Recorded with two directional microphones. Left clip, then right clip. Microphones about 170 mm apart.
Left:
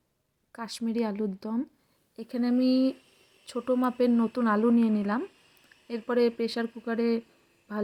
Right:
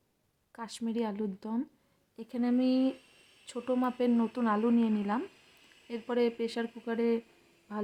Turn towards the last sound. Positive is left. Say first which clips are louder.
# left 5 dB
turn(degrees=20)  # may be behind; listen again after turning